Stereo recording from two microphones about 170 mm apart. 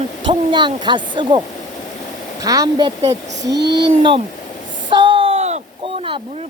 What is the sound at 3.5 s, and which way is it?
Speech, 85° right.